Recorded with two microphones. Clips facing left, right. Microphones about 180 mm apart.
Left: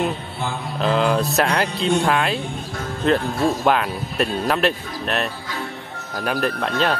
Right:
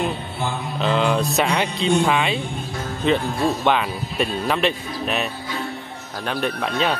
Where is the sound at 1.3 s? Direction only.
Centre (ahead or behind).